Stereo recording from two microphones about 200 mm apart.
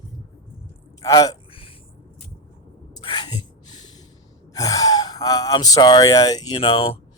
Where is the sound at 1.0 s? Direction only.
15° left (ahead or behind).